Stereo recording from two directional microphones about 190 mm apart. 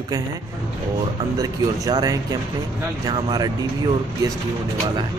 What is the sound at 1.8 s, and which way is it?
A man's voice, 20° right (ahead or behind).